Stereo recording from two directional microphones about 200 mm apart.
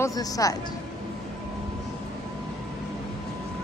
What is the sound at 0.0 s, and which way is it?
Speech, 20° left (ahead or behind).